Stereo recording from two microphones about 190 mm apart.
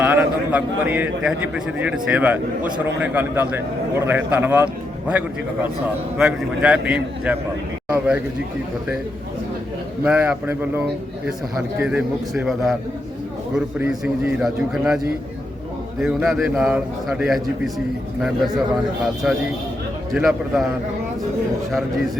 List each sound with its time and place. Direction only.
0.0 s a man's voice: 5° right (ahead or behind)
10.0 s a man's voice: 5° right (ahead or behind)
13.7 s a man's voice: 5° right (ahead or behind)
21.7 s a man's voice: centre (ahead or behind)